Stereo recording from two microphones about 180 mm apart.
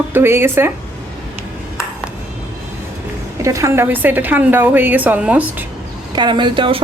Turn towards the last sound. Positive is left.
turn(degrees=-30)  # may be behind; listen again after turning